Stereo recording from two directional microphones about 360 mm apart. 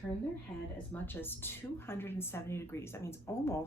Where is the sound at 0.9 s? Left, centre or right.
Centre.